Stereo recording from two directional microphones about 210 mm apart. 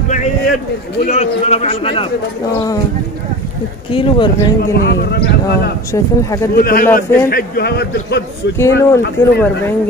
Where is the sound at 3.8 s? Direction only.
25° left (ahead or behind).